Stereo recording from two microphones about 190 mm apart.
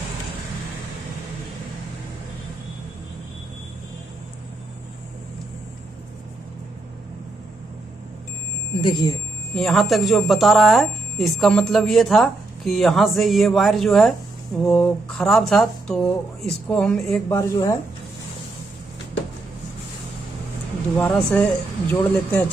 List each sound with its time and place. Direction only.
8.8 s speech: 25° left (ahead or behind)
9.6 s speech: centre (ahead or behind)
17.3 s speech: 15° left (ahead or behind)
21.0 s speech: 5° left (ahead or behind)